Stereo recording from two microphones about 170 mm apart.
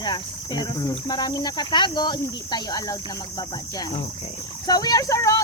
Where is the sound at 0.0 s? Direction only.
25° left (ahead or behind).